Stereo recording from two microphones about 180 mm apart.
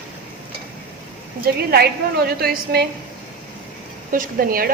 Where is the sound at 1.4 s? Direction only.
60° right (ahead or behind).